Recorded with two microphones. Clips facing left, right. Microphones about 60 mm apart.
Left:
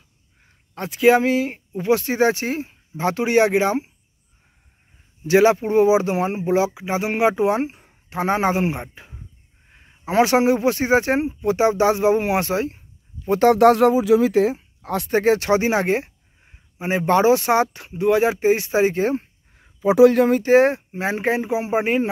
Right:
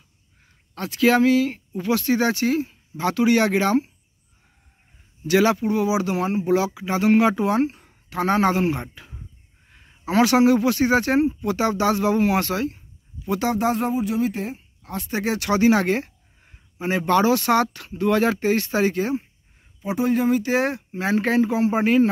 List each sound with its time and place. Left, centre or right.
0.7 s speech: centre
5.2 s speech: left
13.5 s speech: left
15.0 s speech: left
19.6 s speech: left
20.2 s speech: left
20.5 s speech: left